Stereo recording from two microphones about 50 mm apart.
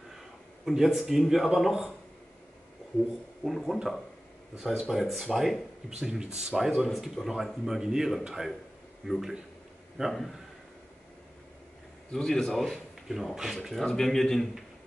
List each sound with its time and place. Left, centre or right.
0.7 s speech: centre
3.4 s speech: centre
10.0 s speech: centre
12.1 s speech: centre
12.5 s a man's voice: centre
13.8 s speech: centre